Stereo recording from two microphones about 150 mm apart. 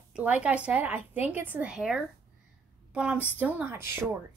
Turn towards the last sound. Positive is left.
turn(degrees=-15)  # may be behind; listen again after turning